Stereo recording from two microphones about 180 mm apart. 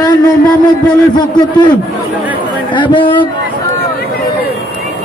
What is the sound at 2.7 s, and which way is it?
Speech, 25° left (ahead or behind).